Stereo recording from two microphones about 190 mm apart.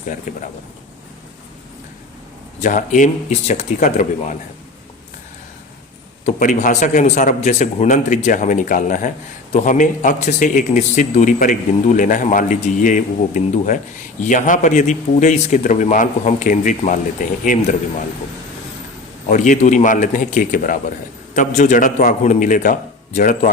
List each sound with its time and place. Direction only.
0.3 s speech: 40° left (ahead or behind)
2.6 s a man's voice: 40° left (ahead or behind)
6.2 s a man's voice: 40° left (ahead or behind)
19.3 s a man's voice: 40° left (ahead or behind)